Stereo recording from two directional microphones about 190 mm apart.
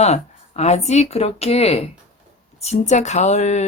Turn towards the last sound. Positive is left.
turn(degrees=35)  # may be behind; listen again after turning